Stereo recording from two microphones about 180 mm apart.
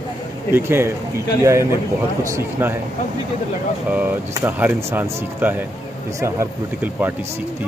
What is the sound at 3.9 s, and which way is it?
Speech, 10° right (ahead or behind).